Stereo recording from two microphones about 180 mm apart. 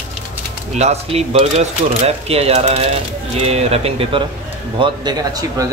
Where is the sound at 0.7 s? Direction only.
40° right (ahead or behind).